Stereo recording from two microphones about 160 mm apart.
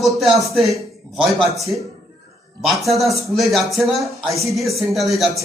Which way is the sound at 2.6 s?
Centre (ahead or behind).